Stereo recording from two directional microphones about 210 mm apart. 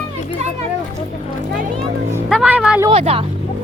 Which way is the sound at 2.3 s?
5° right (ahead or behind).